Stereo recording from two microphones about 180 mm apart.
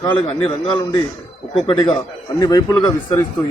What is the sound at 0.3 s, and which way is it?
A man's voice, 30° left (ahead or behind).